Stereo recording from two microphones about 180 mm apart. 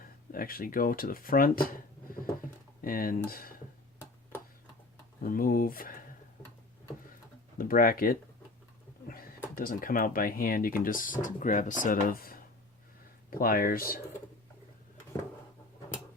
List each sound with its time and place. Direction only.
0.0 s speech: 55° left (ahead or behind)
2.8 s speech: 50° left (ahead or behind)
5.2 s speech: 50° left (ahead or behind)
7.6 s speech: 55° left (ahead or behind)
9.6 s speech: 55° left (ahead or behind)